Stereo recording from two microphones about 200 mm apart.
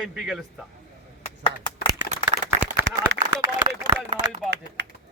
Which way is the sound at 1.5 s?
25° left (ahead or behind).